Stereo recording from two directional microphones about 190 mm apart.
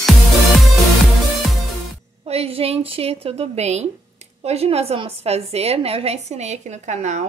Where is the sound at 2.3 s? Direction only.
30° right (ahead or behind).